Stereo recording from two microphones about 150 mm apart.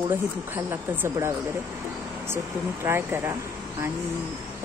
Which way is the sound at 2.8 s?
15° right (ahead or behind).